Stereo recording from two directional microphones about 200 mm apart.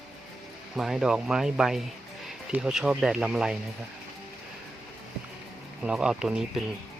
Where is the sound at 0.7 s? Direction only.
Centre (ahead or behind).